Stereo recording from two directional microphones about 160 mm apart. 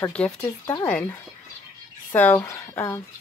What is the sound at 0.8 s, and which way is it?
Speech, 10° left (ahead or behind).